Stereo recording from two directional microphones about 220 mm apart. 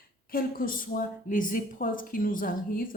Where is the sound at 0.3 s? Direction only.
40° left (ahead or behind).